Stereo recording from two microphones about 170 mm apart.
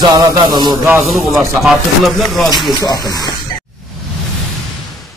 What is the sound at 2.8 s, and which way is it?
Speech, 20° left (ahead or behind).